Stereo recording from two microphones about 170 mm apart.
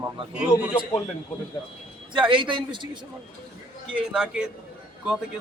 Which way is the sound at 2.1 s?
30° right (ahead or behind).